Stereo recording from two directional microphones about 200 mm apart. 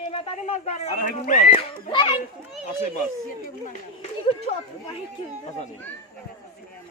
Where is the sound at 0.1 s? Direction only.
30° left (ahead or behind).